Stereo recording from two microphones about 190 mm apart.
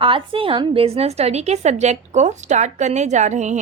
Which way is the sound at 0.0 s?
25° right (ahead or behind).